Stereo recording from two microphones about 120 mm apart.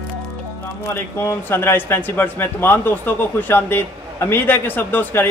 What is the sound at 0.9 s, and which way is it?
Speech, 20° left (ahead or behind).